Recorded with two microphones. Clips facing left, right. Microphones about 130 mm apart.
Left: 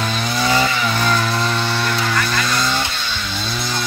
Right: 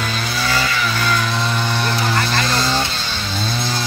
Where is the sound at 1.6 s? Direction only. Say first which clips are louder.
Even; 20° right (ahead or behind).